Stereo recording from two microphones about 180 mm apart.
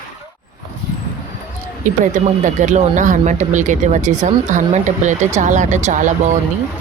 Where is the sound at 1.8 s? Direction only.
45° right (ahead or behind).